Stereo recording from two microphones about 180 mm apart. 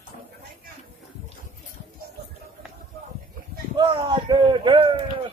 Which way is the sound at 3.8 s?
25° right (ahead or behind).